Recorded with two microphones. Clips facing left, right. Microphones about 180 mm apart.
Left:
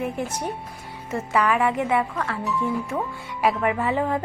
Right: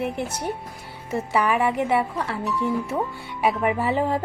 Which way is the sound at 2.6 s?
15° right (ahead or behind).